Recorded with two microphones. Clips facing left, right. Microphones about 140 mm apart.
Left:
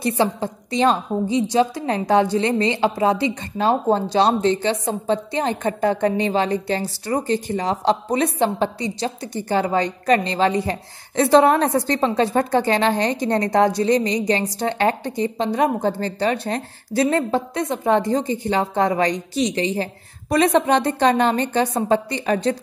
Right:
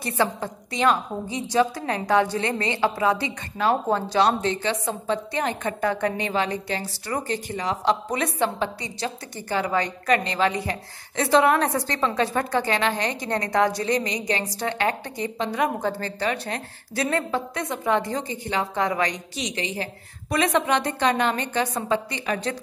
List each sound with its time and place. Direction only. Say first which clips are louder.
0.0 s a woman's voice: left 4 dB; 25° left (ahead or behind)